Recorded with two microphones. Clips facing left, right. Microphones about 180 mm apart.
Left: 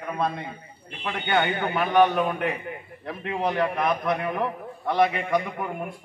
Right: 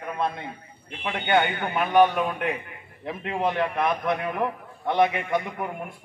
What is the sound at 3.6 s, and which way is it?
Speech, 20° right (ahead or behind).